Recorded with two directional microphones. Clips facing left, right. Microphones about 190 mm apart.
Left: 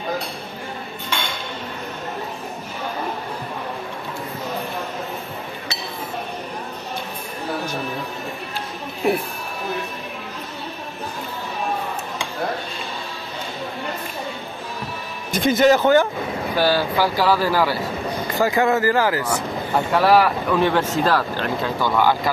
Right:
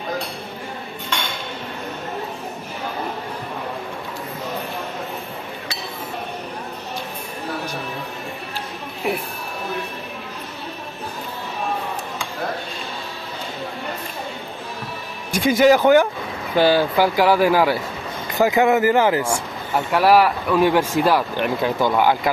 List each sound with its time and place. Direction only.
15.3 s speech: 10° right (ahead or behind)
19.9 s speech: 10° right (ahead or behind)